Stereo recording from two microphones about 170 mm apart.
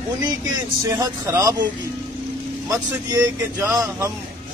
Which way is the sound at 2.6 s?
15° right (ahead or behind).